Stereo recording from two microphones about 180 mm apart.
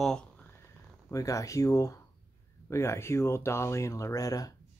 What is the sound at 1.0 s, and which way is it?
Speech, 20° left (ahead or behind).